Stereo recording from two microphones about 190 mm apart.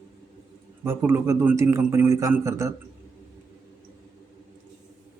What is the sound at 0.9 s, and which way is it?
A man's voice, 10° right (ahead or behind).